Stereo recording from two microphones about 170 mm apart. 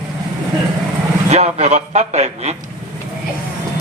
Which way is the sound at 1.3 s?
40° right (ahead or behind).